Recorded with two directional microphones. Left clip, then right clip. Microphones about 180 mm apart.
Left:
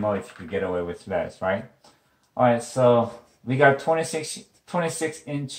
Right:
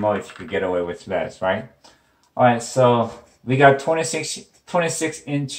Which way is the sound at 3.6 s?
20° left (ahead or behind).